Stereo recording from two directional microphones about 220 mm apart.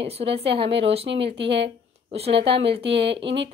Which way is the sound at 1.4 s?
50° right (ahead or behind).